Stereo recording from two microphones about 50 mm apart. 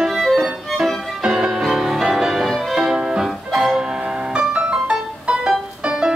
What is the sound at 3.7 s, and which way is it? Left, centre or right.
Music, centre.